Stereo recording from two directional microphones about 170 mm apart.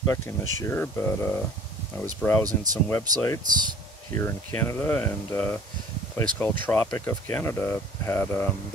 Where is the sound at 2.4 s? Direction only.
20° right (ahead or behind).